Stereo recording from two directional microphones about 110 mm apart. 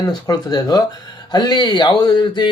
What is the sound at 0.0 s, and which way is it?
Speech, 35° left (ahead or behind).